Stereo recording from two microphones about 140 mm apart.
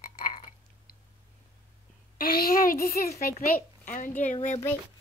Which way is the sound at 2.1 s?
90° left.